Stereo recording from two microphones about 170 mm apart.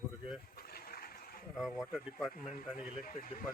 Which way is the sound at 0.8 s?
60° left (ahead or behind).